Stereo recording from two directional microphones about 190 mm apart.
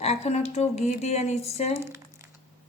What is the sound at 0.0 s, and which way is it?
Speech, 35° left (ahead or behind).